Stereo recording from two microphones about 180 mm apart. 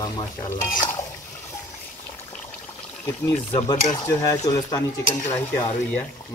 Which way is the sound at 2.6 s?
10° left (ahead or behind).